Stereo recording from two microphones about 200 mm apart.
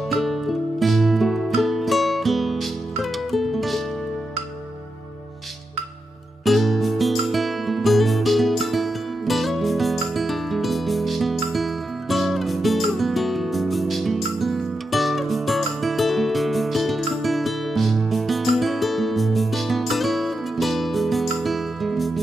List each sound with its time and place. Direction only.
0.1 s music: centre (ahead or behind)
6.4 s music: centre (ahead or behind)